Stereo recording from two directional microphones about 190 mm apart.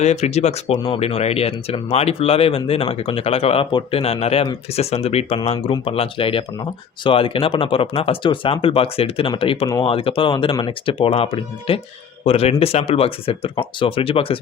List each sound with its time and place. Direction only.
0.0 s speech: 35° left (ahead or behind)